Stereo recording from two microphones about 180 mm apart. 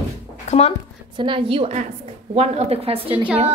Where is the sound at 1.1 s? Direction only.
30° right (ahead or behind).